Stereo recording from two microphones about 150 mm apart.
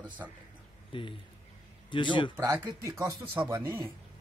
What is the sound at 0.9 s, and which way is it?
Speech, 35° left (ahead or behind).